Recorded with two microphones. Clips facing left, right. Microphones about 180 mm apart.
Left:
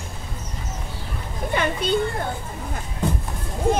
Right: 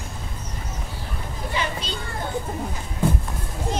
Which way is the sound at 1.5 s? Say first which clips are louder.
Left 7 dB; 55° left (ahead or behind).